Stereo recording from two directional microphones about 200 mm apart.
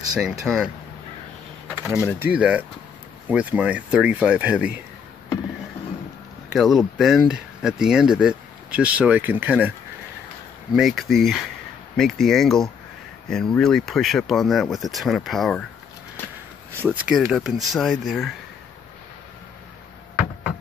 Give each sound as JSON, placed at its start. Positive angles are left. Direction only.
{"t": 0.2, "sound": "speech", "side_deg": 0}
{"t": 1.8, "sound": "speech", "side_deg": -15}
{"t": 6.5, "sound": "speech", "side_deg": 0}
{"t": 16.8, "sound": "speech", "side_deg": -10}